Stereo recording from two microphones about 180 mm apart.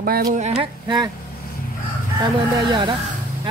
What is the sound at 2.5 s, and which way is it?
Speech, 25° right (ahead or behind).